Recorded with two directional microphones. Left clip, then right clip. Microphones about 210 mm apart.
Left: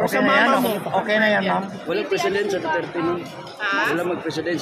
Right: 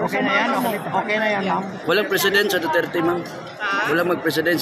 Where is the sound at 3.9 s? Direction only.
45° right (ahead or behind).